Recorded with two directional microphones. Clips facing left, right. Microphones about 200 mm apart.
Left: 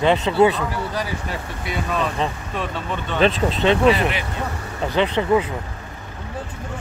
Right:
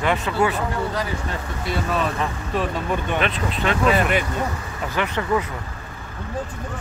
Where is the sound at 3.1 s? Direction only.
30° left (ahead or behind).